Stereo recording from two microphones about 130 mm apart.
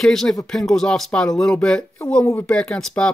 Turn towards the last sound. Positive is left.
turn(degrees=5)  # may be behind; listen again after turning